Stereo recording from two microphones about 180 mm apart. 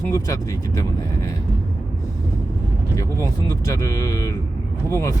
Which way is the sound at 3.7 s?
20° left (ahead or behind).